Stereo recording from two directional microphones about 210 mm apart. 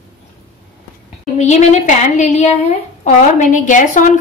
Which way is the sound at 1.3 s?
35° left (ahead or behind).